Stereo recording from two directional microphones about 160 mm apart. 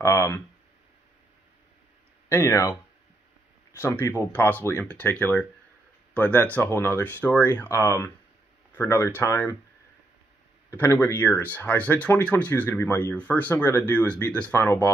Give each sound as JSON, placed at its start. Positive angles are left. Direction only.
{"t": 0.0, "sound": "speech", "side_deg": 15}
{"t": 2.2, "sound": "speech", "side_deg": 20}
{"t": 10.7, "sound": "speech", "side_deg": 15}